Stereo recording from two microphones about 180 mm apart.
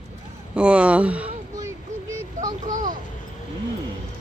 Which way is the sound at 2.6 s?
45° right (ahead or behind).